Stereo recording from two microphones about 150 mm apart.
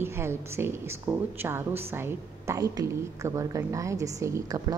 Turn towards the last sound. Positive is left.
turn(degrees=-20)  # may be behind; listen again after turning